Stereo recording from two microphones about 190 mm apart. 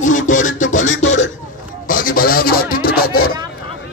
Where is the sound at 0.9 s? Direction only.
75° left (ahead or behind).